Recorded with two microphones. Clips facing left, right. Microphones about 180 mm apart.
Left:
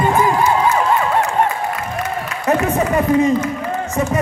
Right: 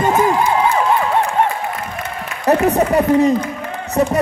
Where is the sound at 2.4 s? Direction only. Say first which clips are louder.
Right 3 dB; 35° right (ahead or behind).